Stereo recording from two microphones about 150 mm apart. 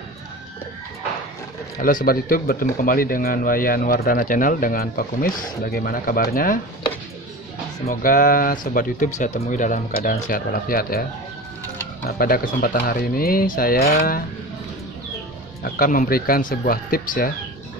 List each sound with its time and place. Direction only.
1.8 s speech: 65° left (ahead or behind)
7.9 s speech: 70° left (ahead or behind)
10.3 s speech: 75° left (ahead or behind)
12.1 s speech: 85° left
15.6 s speech: 75° left (ahead or behind)